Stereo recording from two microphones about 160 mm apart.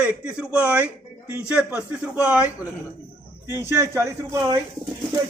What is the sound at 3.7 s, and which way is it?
Speech, 15° right (ahead or behind).